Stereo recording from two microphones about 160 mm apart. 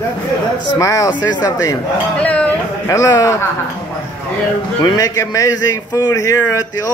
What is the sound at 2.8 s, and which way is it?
Speech, 20° left (ahead or behind).